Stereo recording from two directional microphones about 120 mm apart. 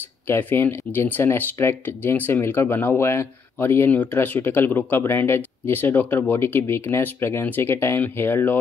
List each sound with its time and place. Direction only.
0.3 s speech: 15° left (ahead or behind)